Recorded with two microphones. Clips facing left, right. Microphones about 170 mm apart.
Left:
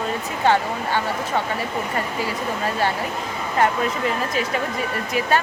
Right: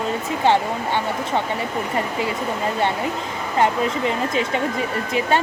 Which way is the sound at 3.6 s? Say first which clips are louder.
Right 1 dB; 25° right (ahead or behind).